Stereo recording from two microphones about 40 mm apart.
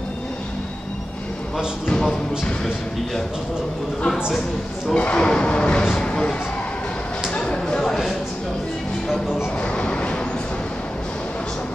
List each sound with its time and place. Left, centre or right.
4.9 s speech: left
7.3 s a sound: left
9.6 s train: left